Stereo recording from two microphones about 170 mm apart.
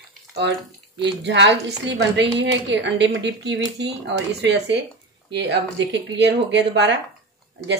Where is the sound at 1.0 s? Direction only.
90° right.